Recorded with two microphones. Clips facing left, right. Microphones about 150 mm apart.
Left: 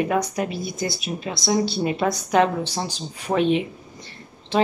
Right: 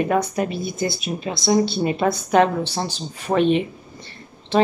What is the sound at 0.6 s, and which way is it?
Speech, 55° right (ahead or behind).